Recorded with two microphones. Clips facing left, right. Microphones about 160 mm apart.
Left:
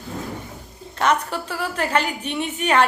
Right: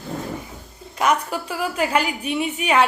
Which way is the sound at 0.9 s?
10° right (ahead or behind).